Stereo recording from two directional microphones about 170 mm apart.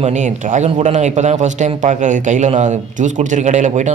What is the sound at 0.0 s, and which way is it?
A man's voice, 45° right (ahead or behind).